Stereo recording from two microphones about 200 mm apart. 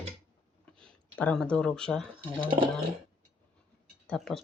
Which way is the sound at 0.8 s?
5° left (ahead or behind).